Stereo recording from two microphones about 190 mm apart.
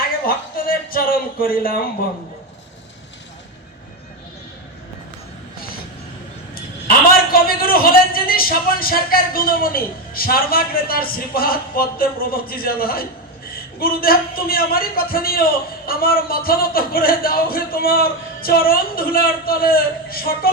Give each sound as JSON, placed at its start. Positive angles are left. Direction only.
{"t": 0.3, "sound": "a man's voice", "side_deg": 50}
{"t": 6.5, "sound": "a man's voice", "side_deg": 50}